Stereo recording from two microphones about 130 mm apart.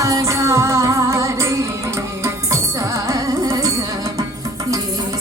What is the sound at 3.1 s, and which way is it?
Music, 25° right (ahead or behind).